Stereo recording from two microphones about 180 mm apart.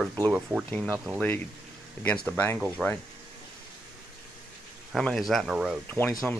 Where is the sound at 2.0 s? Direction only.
5° left (ahead or behind).